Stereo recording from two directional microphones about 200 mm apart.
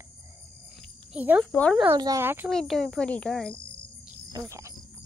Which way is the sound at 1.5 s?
5° left (ahead or behind).